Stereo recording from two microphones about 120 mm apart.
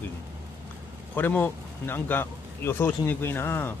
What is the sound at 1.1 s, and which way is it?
Speech, 15° left (ahead or behind).